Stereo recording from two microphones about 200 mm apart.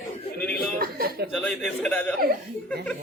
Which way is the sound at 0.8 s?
50° right (ahead or behind).